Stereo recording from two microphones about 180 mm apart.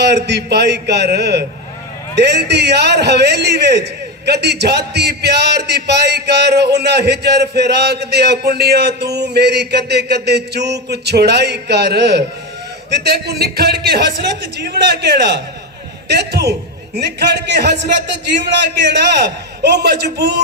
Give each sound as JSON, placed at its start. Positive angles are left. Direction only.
{"t": 0.0, "sound": "a man's voice", "side_deg": -70}